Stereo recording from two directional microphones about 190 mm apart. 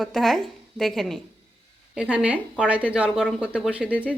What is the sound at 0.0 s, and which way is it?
A woman's voice, centre (ahead or behind).